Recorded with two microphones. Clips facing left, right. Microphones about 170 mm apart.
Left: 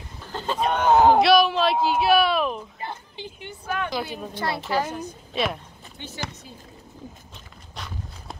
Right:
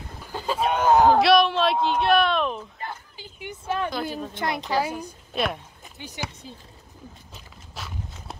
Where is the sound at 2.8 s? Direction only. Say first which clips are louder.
Left 2 dB; 20° left (ahead or behind).